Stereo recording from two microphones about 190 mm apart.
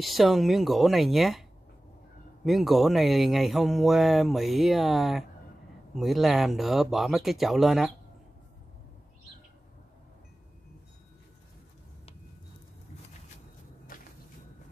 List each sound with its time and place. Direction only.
0.0 s speech: centre (ahead or behind)
2.4 s speech: centre (ahead or behind)
13.9 s a sound: 50° left (ahead or behind)